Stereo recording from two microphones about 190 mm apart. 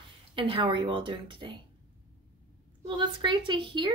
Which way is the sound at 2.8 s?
25° right (ahead or behind).